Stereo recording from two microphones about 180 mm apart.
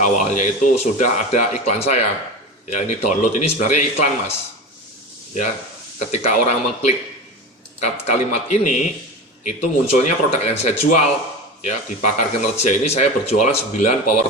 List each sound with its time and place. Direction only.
0.0 s speech: 45° left (ahead or behind)
5.9 s speech: 40° left (ahead or behind)